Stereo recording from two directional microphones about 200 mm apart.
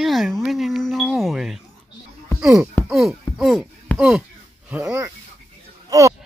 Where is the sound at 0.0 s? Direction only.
Centre (ahead or behind).